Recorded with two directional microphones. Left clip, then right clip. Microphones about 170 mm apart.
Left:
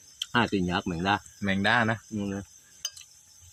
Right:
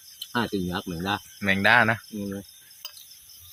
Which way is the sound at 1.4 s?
20° right (ahead or behind).